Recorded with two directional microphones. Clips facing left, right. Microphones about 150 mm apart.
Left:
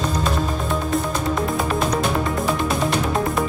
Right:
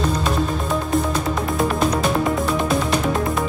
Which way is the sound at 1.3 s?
Centre (ahead or behind).